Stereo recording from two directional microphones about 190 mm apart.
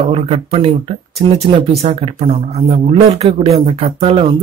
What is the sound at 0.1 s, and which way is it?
Speech, 35° right (ahead or behind).